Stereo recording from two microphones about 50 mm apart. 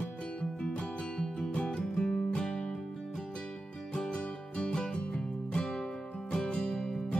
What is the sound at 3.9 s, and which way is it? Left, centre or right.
Music, centre.